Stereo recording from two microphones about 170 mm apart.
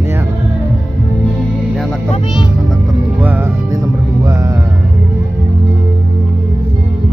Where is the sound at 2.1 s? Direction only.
25° left (ahead or behind).